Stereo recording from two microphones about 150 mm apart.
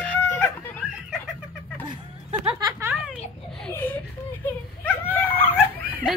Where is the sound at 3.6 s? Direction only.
10° left (ahead or behind).